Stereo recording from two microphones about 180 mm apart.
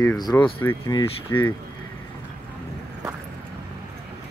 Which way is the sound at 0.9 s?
25° left (ahead or behind).